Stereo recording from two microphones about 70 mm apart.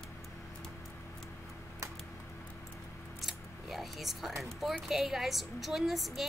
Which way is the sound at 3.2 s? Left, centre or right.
Centre.